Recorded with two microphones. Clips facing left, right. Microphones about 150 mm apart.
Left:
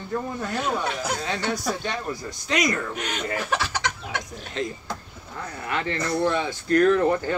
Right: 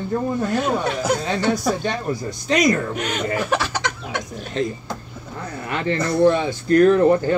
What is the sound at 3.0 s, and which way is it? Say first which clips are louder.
Speech: right 5 dB; 70° right (ahead or behind).